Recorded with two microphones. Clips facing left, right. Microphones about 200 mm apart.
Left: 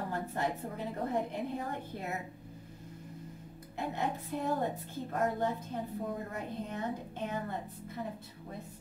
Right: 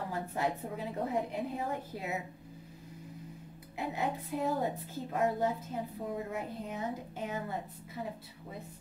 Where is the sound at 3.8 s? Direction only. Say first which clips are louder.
Even; 5° right (ahead or behind).